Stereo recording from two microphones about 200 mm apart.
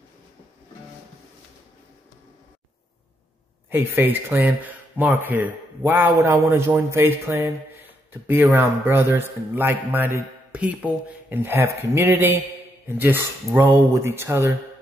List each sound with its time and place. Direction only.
3.7 s speech: 10° right (ahead or behind)